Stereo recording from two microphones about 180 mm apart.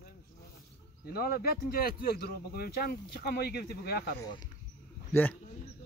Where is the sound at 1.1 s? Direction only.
55° left (ahead or behind).